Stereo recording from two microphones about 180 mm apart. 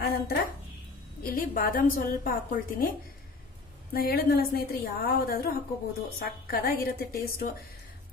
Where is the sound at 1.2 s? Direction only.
55° left (ahead or behind).